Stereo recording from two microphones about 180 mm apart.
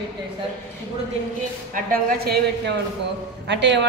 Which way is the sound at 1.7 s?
50° right (ahead or behind).